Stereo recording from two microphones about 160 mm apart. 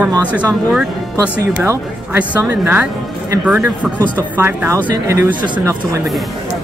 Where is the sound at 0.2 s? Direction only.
10° left (ahead or behind).